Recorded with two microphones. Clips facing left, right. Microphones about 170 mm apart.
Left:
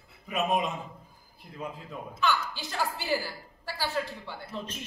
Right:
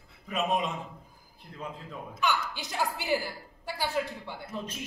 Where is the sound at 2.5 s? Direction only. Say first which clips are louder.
Even; 15° right (ahead or behind).